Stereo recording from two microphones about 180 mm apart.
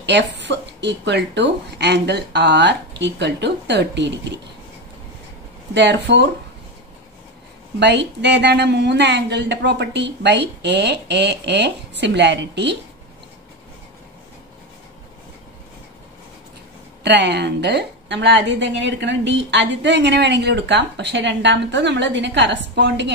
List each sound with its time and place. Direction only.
0.0 s a woman's voice: 75° right (ahead or behind)
5.8 s a woman's voice: 75° right (ahead or behind)
7.8 s a woman's voice: 70° right (ahead or behind)
17.0 s a woman's voice: 70° right (ahead or behind)